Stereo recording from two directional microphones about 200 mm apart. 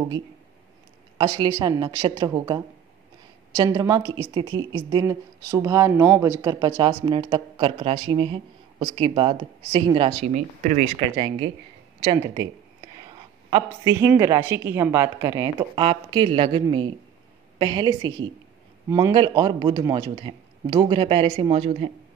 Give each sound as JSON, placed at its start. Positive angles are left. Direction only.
{"t": 1.1, "sound": "a woman's voice", "side_deg": -25}
{"t": 11.0, "sound": "a woman's voice", "side_deg": -25}
{"t": 13.5, "sound": "a woman's voice", "side_deg": -15}